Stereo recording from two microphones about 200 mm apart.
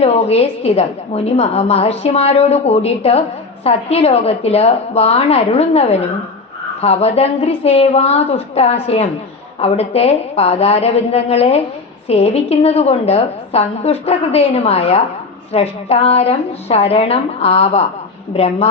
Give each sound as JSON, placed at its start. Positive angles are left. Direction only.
{"t": 0.0, "sound": "a woman's voice", "side_deg": 30}